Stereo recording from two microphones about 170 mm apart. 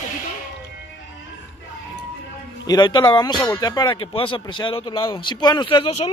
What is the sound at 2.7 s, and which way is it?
Speech, 25° left (ahead or behind).